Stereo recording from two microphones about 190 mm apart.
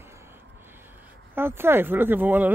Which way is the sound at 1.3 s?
10° right (ahead or behind).